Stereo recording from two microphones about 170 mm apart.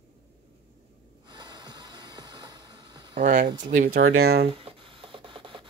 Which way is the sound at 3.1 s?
50° right (ahead or behind).